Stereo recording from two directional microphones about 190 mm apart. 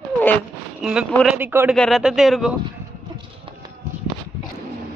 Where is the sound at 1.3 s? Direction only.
10° right (ahead or behind).